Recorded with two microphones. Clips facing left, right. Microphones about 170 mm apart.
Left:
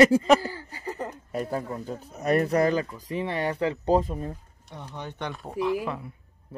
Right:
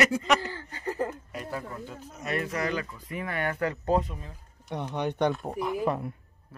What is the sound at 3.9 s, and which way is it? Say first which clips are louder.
Speech: left 4 dB; 40° left (ahead or behind).